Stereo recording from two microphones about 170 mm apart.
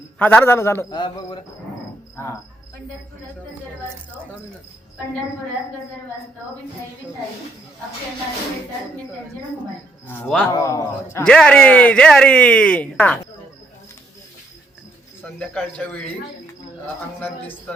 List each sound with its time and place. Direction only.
0.2 s speech: 10° left (ahead or behind)
0.9 s speech: 30° left (ahead or behind)
2.1 s cricket: 15° left (ahead or behind)
10.1 s speech: 10° left (ahead or behind)
10.5 s speech: 20° left (ahead or behind)
11.2 s speech: 5° left (ahead or behind)
15.2 s speech: 10° left (ahead or behind)